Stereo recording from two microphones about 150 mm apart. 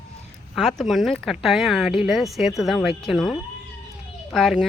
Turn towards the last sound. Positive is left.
turn(degrees=0)  # may be behind; listen again after turning